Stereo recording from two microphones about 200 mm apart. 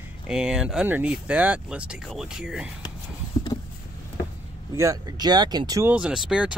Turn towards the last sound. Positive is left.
turn(degrees=-5)  # may be behind; listen again after turning